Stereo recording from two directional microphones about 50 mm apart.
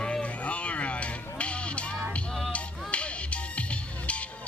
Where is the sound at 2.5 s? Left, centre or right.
Left.